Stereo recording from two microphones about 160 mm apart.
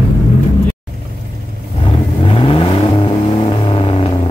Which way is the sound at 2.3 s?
35° left (ahead or behind).